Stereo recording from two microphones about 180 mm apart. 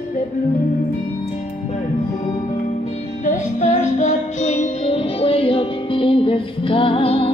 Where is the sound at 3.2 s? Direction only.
40° left (ahead or behind).